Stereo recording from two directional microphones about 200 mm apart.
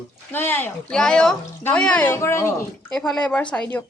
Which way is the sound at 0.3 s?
10° left (ahead or behind).